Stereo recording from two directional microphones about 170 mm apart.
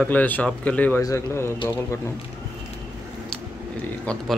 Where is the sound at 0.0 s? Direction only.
10° left (ahead or behind).